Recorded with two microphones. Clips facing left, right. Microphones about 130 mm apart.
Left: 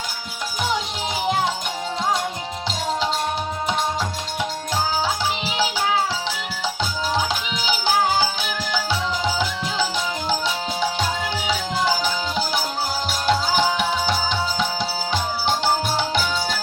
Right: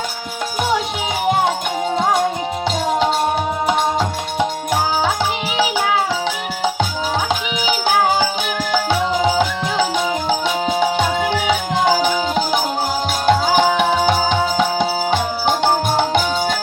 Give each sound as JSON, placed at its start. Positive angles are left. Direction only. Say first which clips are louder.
{"t": 1.3, "sound": "music", "louder": "right 6 dB", "side_deg": -55}
{"t": 3.7, "sound": "music", "louder": "right 6 dB", "side_deg": -60}
{"t": 7.3, "sound": "music", "louder": "right 5 dB", "side_deg": -50}